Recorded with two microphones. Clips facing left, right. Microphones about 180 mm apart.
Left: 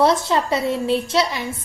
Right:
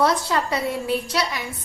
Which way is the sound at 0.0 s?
25° left (ahead or behind).